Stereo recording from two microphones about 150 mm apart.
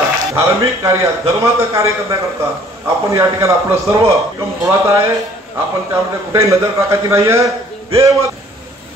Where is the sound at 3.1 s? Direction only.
20° right (ahead or behind).